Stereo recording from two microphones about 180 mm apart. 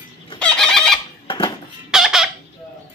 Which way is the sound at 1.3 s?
30° left (ahead or behind).